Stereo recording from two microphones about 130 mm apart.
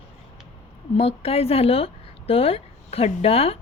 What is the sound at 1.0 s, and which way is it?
A woman's voice, 50° left (ahead or behind).